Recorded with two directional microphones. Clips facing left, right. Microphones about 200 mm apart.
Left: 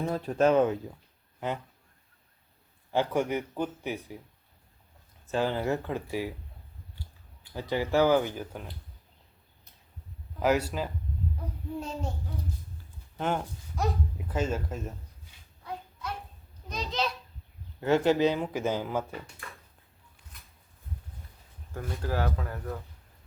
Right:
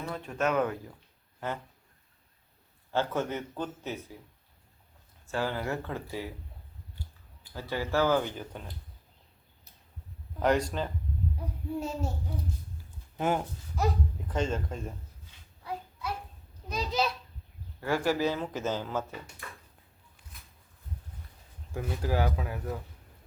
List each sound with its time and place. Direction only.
0.0 s speech: 35° left (ahead or behind)
2.9 s speech: 15° left (ahead or behind)
5.2 s speech: 20° left (ahead or behind)
7.5 s speech: 15° left (ahead or behind)
10.4 s speech: 5° left (ahead or behind)
11.8 s speech: 5° right (ahead or behind)
13.1 s speech: 10° right (ahead or behind)
15.6 s a sound: 5° right (ahead or behind)
16.6 s speech: 10° right (ahead or behind)
17.7 s speech: 20° left (ahead or behind)
21.7 s speech: 5° right (ahead or behind)